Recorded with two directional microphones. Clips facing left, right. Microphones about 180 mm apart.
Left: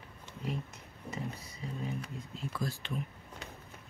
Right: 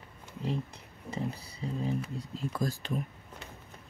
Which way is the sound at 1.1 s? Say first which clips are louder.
Right 5 dB; 35° right (ahead or behind).